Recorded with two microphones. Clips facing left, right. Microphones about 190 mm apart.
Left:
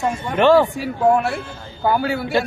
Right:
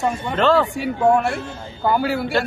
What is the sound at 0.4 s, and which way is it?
Speech, 15° left (ahead or behind).